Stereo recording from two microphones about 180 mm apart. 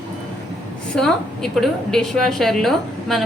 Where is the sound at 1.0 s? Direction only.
5° left (ahead or behind).